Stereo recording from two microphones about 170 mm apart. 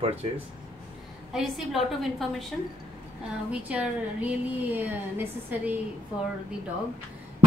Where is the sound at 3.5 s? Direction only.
10° right (ahead or behind).